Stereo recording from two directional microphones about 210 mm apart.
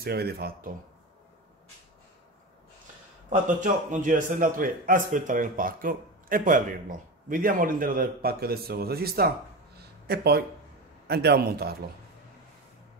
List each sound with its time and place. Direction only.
0.0 s a man's voice: 50° right (ahead or behind)
3.3 s a man's voice: 40° right (ahead or behind)
9.8 s a sound: 50° right (ahead or behind)
11.1 s a man's voice: 50° right (ahead or behind)